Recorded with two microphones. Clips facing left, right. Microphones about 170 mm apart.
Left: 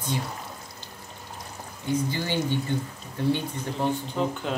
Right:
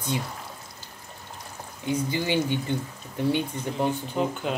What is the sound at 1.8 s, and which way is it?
Speech, 15° right (ahead or behind).